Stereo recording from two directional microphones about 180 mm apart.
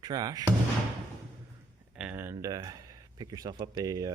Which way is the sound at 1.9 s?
10° right (ahead or behind).